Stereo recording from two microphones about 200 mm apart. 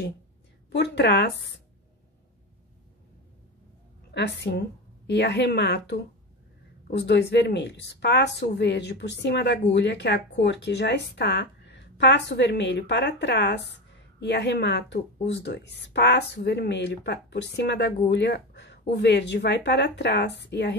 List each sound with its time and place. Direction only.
0.7 s a woman's voice: 55° left (ahead or behind)
4.1 s a woman's voice: 60° left (ahead or behind)